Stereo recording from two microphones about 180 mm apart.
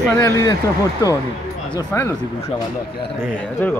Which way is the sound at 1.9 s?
15° left (ahead or behind).